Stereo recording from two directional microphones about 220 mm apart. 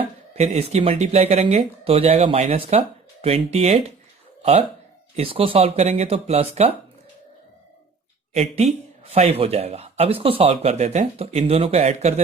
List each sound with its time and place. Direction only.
0.3 s speech: 30° right (ahead or behind)
5.1 s speech: 25° right (ahead or behind)
8.3 s speech: 30° right (ahead or behind)